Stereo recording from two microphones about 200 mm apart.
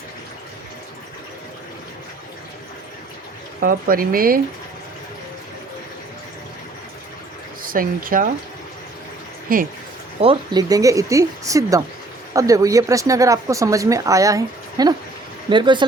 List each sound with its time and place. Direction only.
3.6 s speech: 45° right (ahead or behind)
7.6 s speech: 45° right (ahead or behind)
9.5 s speech: 45° right (ahead or behind)
10.2 s speech: 25° right (ahead or behind)